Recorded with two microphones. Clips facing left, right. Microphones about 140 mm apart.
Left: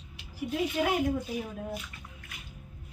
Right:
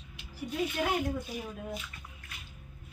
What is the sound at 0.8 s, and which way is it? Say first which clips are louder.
Speech: left 3 dB; 10° left (ahead or behind).